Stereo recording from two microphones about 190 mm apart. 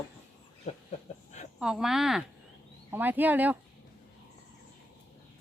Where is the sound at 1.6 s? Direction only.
5° right (ahead or behind).